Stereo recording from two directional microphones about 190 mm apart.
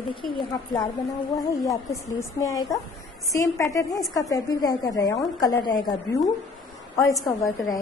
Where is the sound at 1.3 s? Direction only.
15° left (ahead or behind).